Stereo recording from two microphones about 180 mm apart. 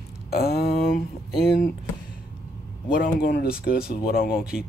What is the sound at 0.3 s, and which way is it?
Speech, 60° left (ahead or behind).